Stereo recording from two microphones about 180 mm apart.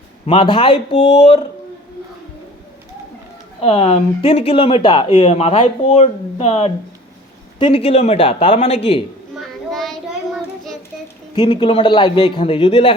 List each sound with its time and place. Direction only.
0.3 s speech: 30° left (ahead or behind)
3.6 s speech: 30° left (ahead or behind)
9.7 s child singing: centre (ahead or behind)
11.3 s speech: 30° left (ahead or behind)